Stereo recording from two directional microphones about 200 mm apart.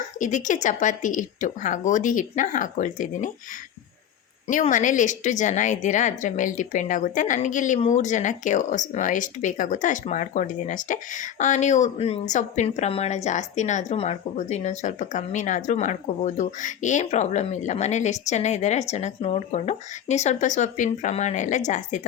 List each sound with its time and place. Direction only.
0.2 s a woman's voice: 40° left (ahead or behind)
4.4 s a woman's voice: 40° left (ahead or behind)